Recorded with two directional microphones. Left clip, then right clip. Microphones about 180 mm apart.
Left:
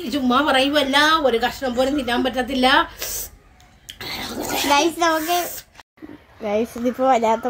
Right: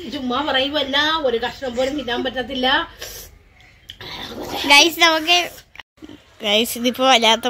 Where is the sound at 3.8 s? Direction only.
10° left (ahead or behind).